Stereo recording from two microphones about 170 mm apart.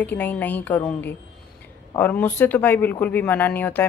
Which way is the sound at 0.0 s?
10° left (ahead or behind).